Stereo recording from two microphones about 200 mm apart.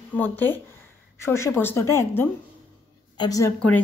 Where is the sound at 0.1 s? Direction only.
10° left (ahead or behind).